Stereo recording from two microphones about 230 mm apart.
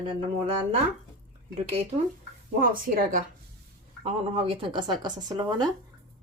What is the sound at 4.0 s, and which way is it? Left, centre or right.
A woman's voice, right.